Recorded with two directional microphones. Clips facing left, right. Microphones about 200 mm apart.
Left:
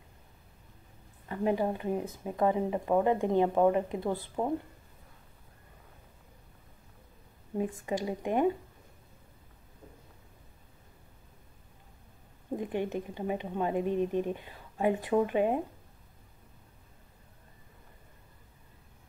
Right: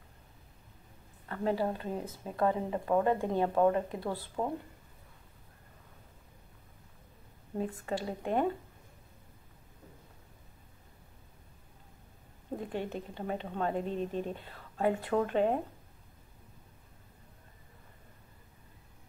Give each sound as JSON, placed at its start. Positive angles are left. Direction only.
{"t": 1.3, "sound": "speech", "side_deg": 15}
{"t": 7.5, "sound": "speech", "side_deg": 15}
{"t": 12.5, "sound": "speech", "side_deg": 15}